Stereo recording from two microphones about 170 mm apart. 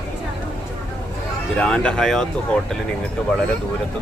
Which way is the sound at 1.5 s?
5° left (ahead or behind).